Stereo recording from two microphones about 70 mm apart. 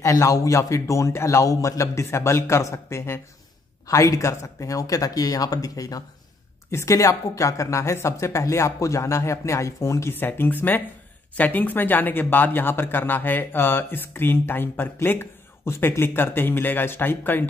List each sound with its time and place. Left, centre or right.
0.0 s speech: left
3.8 s speech: left
6.7 s speech: left
10.1 s speech: left